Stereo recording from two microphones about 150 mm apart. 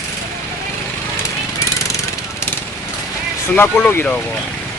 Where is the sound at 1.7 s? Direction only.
20° left (ahead or behind).